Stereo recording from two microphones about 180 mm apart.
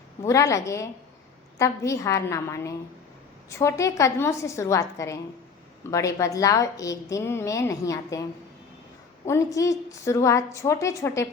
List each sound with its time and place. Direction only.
0.2 s a woman's voice: 15° left (ahead or behind)
9.2 s a woman's voice: 15° left (ahead or behind)